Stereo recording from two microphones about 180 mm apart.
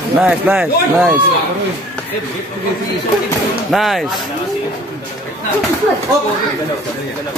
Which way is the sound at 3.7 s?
Centre (ahead or behind).